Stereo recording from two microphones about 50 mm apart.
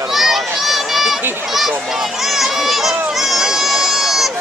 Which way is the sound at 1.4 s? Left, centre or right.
Centre.